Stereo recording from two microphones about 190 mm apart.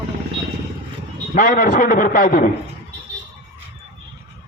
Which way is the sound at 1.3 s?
45° left (ahead or behind).